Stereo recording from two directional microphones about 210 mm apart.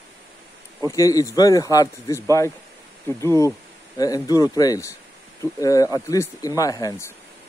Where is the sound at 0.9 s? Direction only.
15° left (ahead or behind).